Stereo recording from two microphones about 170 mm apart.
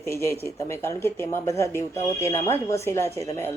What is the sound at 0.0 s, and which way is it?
A man's voice, 15° left (ahead or behind).